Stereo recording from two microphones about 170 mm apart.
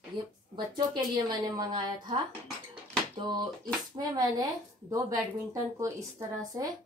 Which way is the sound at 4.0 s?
25° right (ahead or behind).